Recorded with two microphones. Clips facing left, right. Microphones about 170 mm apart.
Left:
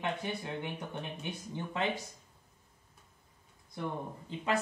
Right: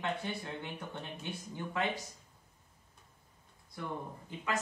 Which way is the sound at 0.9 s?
20° left (ahead or behind).